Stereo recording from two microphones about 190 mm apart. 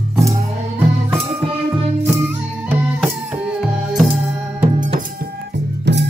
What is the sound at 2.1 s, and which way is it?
Music, 10° right (ahead or behind).